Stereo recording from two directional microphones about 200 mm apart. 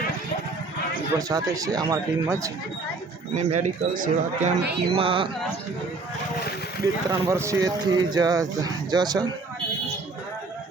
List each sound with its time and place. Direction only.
1.3 s speech: 15° right (ahead or behind)
3.3 s speech: 40° right (ahead or behind)
4.6 s speech: 55° right (ahead or behind)
4.9 s speech: 25° right (ahead or behind)
6.8 s speech: 15° right (ahead or behind)